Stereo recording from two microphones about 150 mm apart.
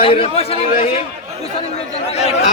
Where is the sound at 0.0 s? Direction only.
35° left (ahead or behind).